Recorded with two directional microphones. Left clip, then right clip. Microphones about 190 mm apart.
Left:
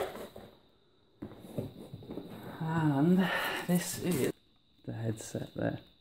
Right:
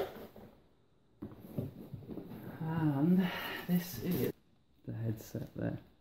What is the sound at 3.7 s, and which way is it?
Speech, 40° left (ahead or behind).